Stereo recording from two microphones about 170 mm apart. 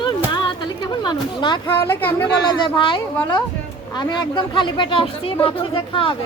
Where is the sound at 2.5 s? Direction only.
30° left (ahead or behind).